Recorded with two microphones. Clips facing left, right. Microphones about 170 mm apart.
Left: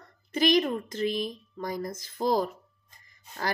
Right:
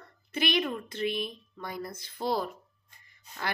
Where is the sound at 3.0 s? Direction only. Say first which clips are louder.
Left 3 dB; 40° left (ahead or behind).